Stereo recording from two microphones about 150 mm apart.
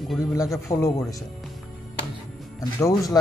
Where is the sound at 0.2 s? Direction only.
20° left (ahead or behind).